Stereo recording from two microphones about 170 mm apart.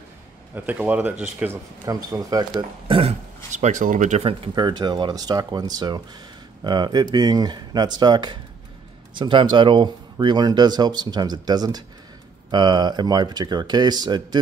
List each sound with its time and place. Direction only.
0.6 s speech: 10° right (ahead or behind)
1.9 s a man's voice: 20° right (ahead or behind)